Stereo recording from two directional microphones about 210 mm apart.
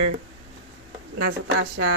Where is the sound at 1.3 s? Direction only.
90° right.